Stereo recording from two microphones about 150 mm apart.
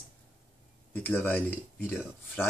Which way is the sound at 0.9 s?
10° left (ahead or behind).